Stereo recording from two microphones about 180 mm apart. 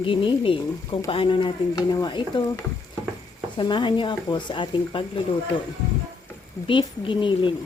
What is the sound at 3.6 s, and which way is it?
A woman's voice, 25° left (ahead or behind).